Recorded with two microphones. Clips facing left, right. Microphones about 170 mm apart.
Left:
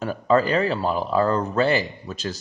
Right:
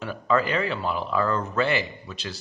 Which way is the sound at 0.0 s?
40° left (ahead or behind).